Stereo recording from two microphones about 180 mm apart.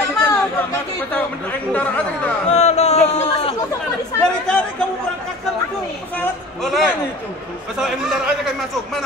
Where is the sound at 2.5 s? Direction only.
40° left (ahead or behind).